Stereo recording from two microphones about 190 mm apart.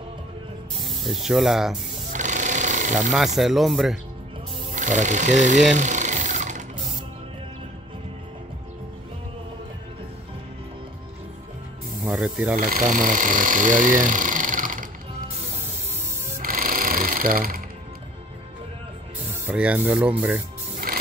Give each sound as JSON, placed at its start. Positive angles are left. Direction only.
{"t": 0.7, "sound": "speech", "side_deg": 0}
{"t": 2.1, "sound": "a sound", "side_deg": -40}
{"t": 3.3, "sound": "speech", "side_deg": 0}
{"t": 4.7, "sound": "sewing machine", "side_deg": -40}
{"t": 12.0, "sound": "speech", "side_deg": -5}
{"t": 12.5, "sound": "speech", "side_deg": -45}
{"t": 16.3, "sound": "music", "side_deg": -45}
{"t": 19.4, "sound": "speech", "side_deg": -5}
{"t": 20.7, "sound": "music", "side_deg": -50}